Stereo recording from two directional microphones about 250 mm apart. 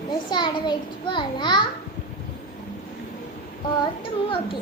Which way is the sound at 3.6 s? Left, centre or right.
Centre.